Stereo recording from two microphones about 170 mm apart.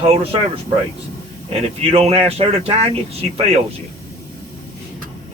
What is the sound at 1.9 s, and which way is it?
Speech, 35° right (ahead or behind).